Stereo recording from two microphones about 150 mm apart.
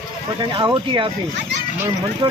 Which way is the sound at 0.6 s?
30° right (ahead or behind).